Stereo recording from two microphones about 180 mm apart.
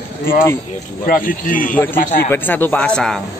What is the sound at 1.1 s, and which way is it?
Speech, 50° left (ahead or behind).